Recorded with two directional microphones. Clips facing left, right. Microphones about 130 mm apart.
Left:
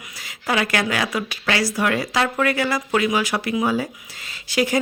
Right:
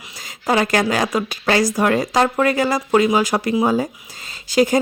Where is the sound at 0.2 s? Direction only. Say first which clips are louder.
Right 4 dB; 40° right (ahead or behind).